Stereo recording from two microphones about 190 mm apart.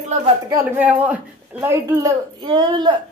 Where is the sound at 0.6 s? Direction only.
10° right (ahead or behind).